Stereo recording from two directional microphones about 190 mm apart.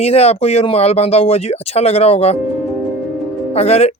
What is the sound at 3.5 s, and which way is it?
Speech, 35° left (ahead or behind).